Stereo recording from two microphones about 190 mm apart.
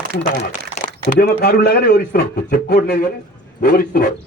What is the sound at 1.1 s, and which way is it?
A man's voice, 50° left (ahead or behind).